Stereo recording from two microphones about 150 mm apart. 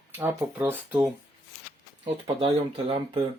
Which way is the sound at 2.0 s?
40° right (ahead or behind).